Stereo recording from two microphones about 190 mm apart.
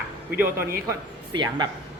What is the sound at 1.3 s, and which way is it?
Speech, 20° right (ahead or behind).